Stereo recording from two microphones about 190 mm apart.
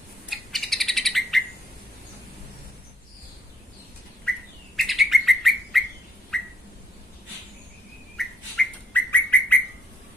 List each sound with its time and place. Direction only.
0.3 s bird: centre (ahead or behind)
4.7 s bird: centre (ahead or behind)
6.3 s a sound: 5° left (ahead or behind)
8.2 s bird: 5° left (ahead or behind)